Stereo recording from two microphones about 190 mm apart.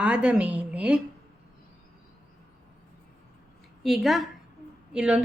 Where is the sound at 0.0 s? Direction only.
5° right (ahead or behind).